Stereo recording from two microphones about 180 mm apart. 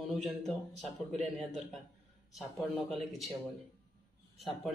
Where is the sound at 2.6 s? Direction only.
Centre (ahead or behind).